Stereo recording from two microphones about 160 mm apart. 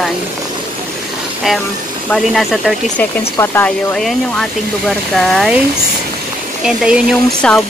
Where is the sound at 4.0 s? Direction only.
Centre (ahead or behind).